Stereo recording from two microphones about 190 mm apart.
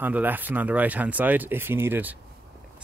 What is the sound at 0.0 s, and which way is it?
Speech, 10° right (ahead or behind).